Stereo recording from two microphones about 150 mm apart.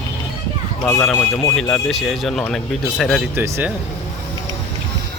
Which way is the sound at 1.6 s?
5° left (ahead or behind).